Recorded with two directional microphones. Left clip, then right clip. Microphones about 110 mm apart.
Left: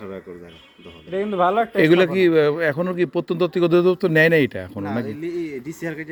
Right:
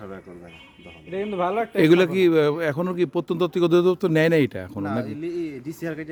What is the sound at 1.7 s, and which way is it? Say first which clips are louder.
A man's voice: right 2 dB; 45° right (ahead or behind).